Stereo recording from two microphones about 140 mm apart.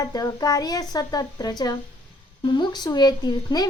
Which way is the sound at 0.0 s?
25° left (ahead or behind).